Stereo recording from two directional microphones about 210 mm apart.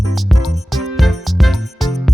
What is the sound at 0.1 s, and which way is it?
Music, centre (ahead or behind).